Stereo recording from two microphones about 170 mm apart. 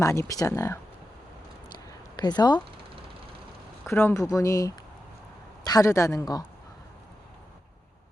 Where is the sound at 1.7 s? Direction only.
25° left (ahead or behind).